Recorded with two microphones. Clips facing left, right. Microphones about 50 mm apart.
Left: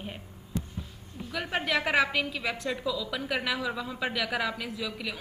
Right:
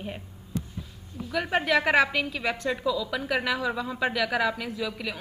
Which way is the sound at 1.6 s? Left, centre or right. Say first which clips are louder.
Right 3 dB; centre.